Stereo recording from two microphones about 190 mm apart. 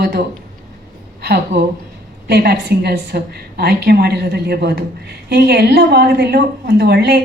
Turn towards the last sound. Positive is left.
turn(degrees=-60)  # may be behind; listen again after turning